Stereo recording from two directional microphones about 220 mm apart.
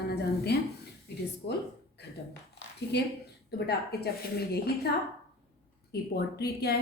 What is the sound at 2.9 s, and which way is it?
Speech, 50° left (ahead or behind).